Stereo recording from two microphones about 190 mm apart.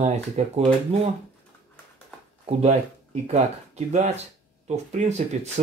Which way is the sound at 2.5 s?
35° right (ahead or behind).